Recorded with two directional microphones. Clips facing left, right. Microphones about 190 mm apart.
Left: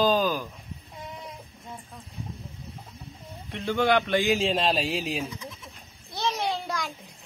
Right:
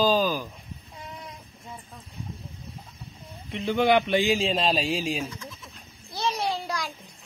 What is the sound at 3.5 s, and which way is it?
Speech, 15° right (ahead or behind).